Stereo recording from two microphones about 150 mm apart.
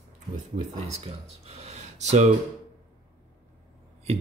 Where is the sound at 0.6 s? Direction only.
50° right (ahead or behind).